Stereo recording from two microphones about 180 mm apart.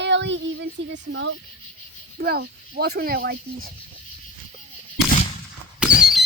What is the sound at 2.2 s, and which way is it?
Speech, 60° right (ahead or behind).